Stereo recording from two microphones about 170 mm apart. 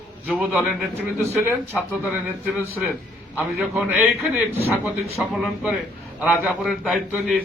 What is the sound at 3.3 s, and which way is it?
A man's voice, 10° right (ahead or behind).